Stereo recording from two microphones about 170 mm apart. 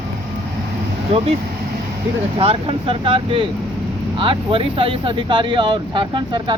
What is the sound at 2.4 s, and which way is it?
Speech, 35° right (ahead or behind).